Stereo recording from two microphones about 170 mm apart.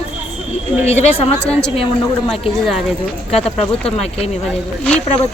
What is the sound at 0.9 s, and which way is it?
Speech, 40° left (ahead or behind).